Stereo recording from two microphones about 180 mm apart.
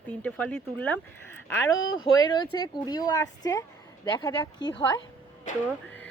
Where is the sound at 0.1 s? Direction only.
10° left (ahead or behind).